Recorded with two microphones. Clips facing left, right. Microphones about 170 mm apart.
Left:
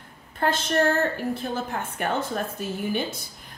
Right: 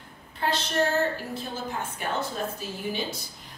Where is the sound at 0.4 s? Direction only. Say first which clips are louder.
Left 4 dB; 50° left (ahead or behind).